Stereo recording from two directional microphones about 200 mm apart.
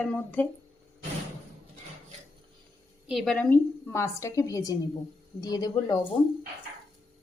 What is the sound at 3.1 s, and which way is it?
A woman's voice, centre (ahead or behind).